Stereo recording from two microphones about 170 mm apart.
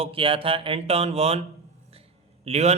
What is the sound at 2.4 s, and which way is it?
Speech, 40° right (ahead or behind).